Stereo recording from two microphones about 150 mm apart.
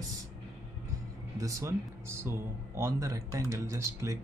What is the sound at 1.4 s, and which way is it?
Speech, 20° right (ahead or behind).